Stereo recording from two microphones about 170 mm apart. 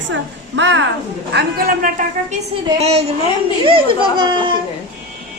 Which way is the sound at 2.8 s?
40° right (ahead or behind).